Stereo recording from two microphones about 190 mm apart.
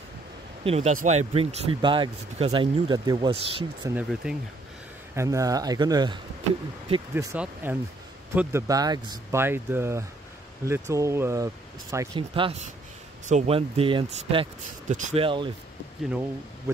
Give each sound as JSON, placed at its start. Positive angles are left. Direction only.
{"t": 0.7, "sound": "speech", "side_deg": -35}
{"t": 3.9, "sound": "speech", "side_deg": -5}
{"t": 5.1, "sound": "speech", "side_deg": -15}
{"t": 7.2, "sound": "speech", "side_deg": -10}
{"t": 12.2, "sound": "speech", "side_deg": -30}
{"t": 16.0, "sound": "speech", "side_deg": -5}